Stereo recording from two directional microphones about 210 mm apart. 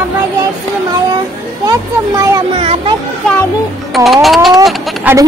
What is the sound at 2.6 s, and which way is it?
Speech, 25° right (ahead or behind).